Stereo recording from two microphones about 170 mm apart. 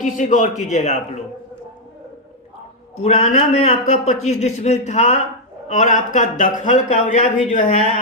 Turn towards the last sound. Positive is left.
turn(degrees=45)  # may be behind; listen again after turning